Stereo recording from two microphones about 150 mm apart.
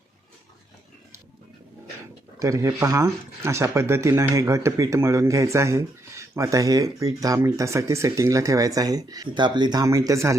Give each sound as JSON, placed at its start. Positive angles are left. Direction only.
{"t": 2.4, "sound": "speech", "side_deg": -20}